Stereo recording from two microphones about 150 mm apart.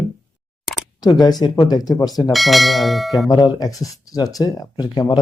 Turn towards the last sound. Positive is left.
turn(degrees=25)  # may be behind; listen again after turning